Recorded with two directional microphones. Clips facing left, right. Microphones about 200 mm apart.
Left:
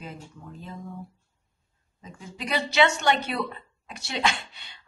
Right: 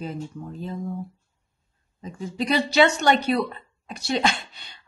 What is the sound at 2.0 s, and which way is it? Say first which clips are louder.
Speech: right 10 dB; 35° right (ahead or behind).